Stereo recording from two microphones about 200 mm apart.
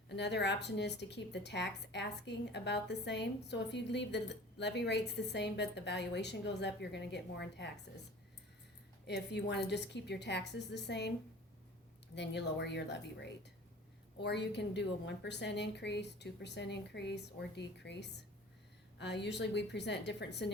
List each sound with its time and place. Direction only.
0.2 s a woman's voice: 60° left (ahead or behind)
9.0 s a woman's voice: 55° left (ahead or behind)
12.1 s a woman's voice: 60° left (ahead or behind)